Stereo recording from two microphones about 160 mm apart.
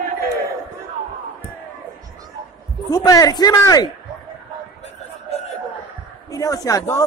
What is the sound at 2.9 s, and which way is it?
Speech, 25° left (ahead or behind).